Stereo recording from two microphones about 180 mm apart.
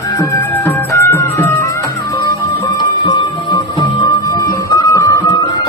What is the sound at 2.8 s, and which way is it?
Music, 25° left (ahead or behind).